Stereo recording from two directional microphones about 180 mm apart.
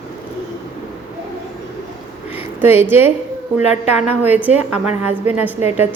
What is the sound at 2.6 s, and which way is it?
A woman's voice, 15° right (ahead or behind).